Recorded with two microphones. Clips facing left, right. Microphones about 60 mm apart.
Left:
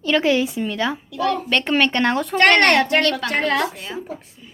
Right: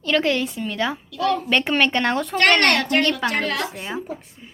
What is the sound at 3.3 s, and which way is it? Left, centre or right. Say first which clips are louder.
Speech: left 4 dB; left.